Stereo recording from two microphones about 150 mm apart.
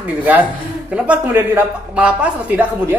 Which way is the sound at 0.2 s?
10° right (ahead or behind).